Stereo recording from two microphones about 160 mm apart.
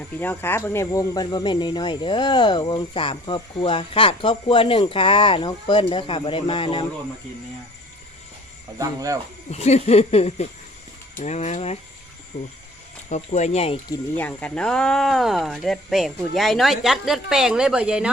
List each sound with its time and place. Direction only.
0.2 s speech: 10° left (ahead or behind); by 6.8 s 35° left (ahead or behind)
8.8 s speech: 20° right (ahead or behind)
9.5 s speech: 45° left (ahead or behind)
14.2 s speech: 10° left (ahead or behind)